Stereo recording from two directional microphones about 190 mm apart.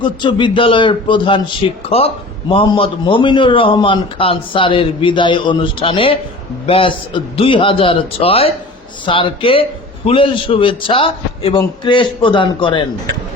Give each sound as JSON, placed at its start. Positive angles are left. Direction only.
{"t": 0.0, "sound": "a man's voice", "side_deg": 25}